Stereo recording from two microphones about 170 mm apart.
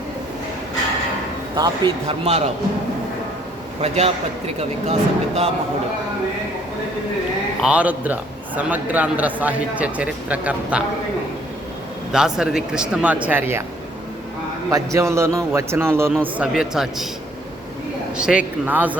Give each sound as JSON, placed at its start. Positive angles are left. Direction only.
{"t": 1.5, "sound": "speech", "side_deg": -25}
{"t": 2.0, "sound": "speech", "side_deg": -40}
{"t": 3.8, "sound": "speech", "side_deg": -40}
{"t": 7.6, "sound": "a man's voice", "side_deg": -10}
{"t": 12.1, "sound": "a man's voice", "side_deg": -5}
{"t": 14.7, "sound": "a man's voice", "side_deg": -20}
{"t": 18.2, "sound": "a man's voice", "side_deg": -5}